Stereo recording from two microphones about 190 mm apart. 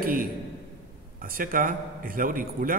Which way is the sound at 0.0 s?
50° right (ahead or behind).